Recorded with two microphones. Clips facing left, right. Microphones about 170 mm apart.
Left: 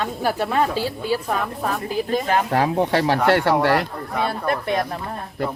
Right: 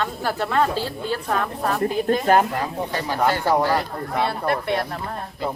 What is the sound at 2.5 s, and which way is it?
Speech, 75° left (ahead or behind).